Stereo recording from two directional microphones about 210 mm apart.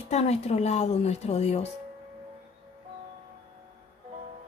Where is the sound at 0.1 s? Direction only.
30° left (ahead or behind).